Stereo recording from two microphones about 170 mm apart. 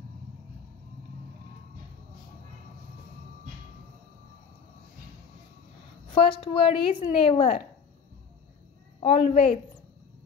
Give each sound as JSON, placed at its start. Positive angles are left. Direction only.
{"t": 6.0, "sound": "a woman's voice", "side_deg": 30}
{"t": 9.0, "sound": "a woman's voice", "side_deg": 35}